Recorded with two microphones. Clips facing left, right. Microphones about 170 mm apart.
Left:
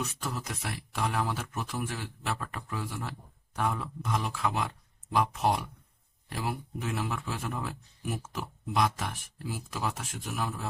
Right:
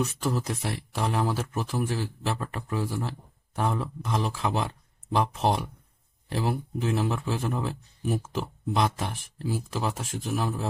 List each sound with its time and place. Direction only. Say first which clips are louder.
0.0 s speech: right 8 dB; 30° right (ahead or behind)